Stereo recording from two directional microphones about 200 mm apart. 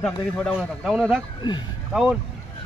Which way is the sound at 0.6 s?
Centre (ahead or behind).